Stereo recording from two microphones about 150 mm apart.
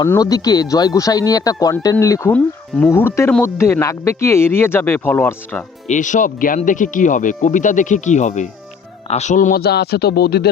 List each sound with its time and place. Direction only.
0.0 s speech: 25° left (ahead or behind)
2.3 s speech: 10° left (ahead or behind)
5.9 s a man's voice: 55° left (ahead or behind); by 10.5 s 90° left